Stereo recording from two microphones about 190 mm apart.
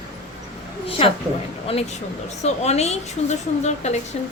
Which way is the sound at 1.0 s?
30° left (ahead or behind).